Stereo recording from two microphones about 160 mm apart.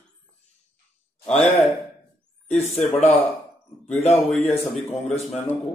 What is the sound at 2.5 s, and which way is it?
Speech, 45° left (ahead or behind).